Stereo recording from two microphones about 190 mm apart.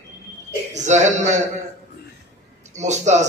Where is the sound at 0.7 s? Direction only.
40° right (ahead or behind).